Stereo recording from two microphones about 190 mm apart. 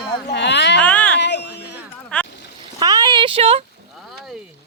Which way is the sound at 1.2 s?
65° left (ahead or behind).